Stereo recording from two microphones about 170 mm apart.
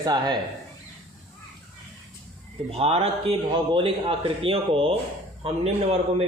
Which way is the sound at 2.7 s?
35° right (ahead or behind).